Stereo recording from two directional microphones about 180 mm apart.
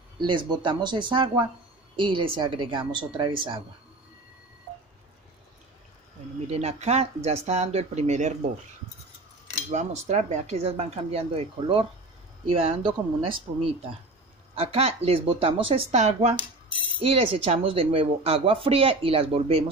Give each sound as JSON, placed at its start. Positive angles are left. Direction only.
{"t": 0.3, "sound": "a woman's voice", "side_deg": -25}
{"t": 6.5, "sound": "coin", "side_deg": -35}
{"t": 9.6, "sound": "coin", "side_deg": -40}